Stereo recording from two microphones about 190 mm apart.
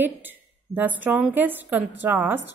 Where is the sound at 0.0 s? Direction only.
10° right (ahead or behind).